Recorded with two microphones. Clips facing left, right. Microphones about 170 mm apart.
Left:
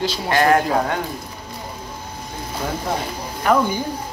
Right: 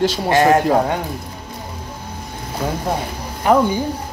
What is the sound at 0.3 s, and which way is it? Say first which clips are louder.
Speech: right 2 dB; 20° right (ahead or behind).